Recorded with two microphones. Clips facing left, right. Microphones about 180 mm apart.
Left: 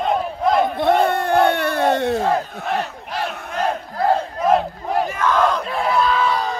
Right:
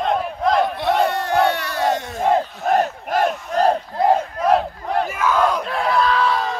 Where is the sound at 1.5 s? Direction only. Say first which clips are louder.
Left 3 dB; 55° left (ahead or behind).